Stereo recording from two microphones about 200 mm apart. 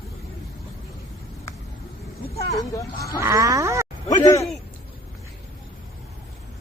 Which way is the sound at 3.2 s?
15° right (ahead or behind).